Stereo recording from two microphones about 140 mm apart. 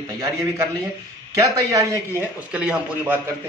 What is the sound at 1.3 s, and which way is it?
Speech, 25° right (ahead or behind).